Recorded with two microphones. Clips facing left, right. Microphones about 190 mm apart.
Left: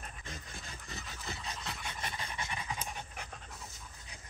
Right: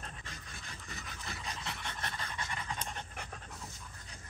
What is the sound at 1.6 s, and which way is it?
Pant, 5° left (ahead or behind).